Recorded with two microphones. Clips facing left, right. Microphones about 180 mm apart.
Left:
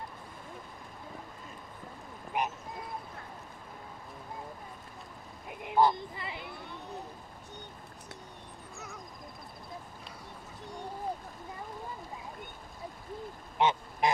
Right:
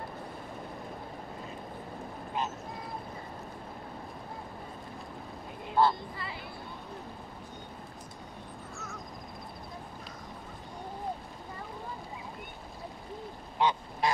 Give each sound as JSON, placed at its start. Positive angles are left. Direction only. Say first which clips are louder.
{"t": 2.4, "sound": "vehicle", "louder": "left 2 dB", "side_deg": 15}
{"t": 5.6, "sound": "speech", "louder": "left 1 dB", "side_deg": 15}
{"t": 13.6, "sound": "duck", "louder": "left 1 dB", "side_deg": 20}